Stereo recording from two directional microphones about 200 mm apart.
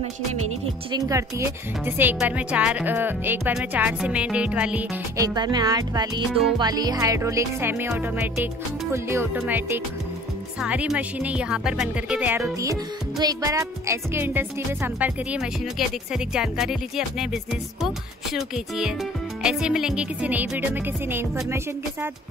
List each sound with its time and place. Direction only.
0.9 s speech: 15° right (ahead or behind)
5.1 s speech: 20° right (ahead or behind)
10.6 s speech: 5° right (ahead or behind)